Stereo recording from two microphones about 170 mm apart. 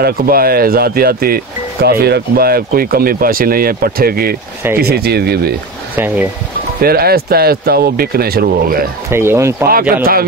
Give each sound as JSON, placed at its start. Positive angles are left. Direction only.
{"t": 0.0, "sound": "speech", "side_deg": -60}
{"t": 5.9, "sound": "speech", "side_deg": -10}
{"t": 6.8, "sound": "speech", "side_deg": -65}
{"t": 9.1, "sound": "speech", "side_deg": -15}